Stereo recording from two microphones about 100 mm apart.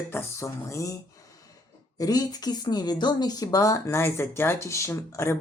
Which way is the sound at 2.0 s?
40° left (ahead or behind).